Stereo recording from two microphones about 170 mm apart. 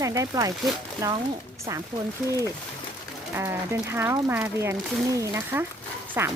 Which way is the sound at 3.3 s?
15° right (ahead or behind).